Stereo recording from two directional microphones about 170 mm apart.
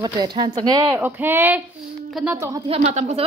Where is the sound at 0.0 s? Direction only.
25° right (ahead or behind).